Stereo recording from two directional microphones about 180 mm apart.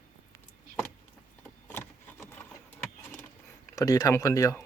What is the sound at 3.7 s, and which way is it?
Speech, 20° left (ahead or behind).